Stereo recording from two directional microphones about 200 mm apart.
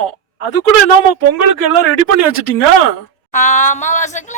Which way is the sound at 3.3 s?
35° left (ahead or behind).